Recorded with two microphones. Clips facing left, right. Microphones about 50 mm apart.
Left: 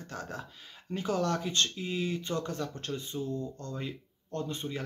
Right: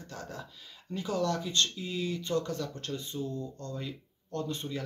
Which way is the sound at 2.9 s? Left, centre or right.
Centre.